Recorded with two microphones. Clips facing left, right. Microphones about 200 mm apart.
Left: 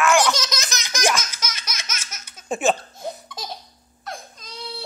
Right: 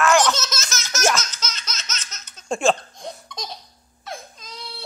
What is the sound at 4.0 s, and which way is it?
Baby cry, centre (ahead or behind).